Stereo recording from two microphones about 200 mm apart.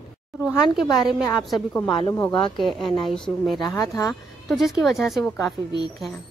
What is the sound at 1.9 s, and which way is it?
Speech, 25° left (ahead or behind).